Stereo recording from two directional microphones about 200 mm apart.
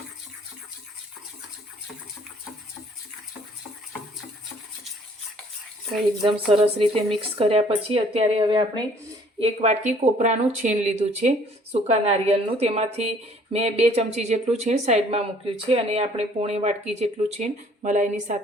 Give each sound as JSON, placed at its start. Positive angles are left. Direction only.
{"t": 6.5, "sound": "speech", "side_deg": -30}
{"t": 9.4, "sound": "speech", "side_deg": -35}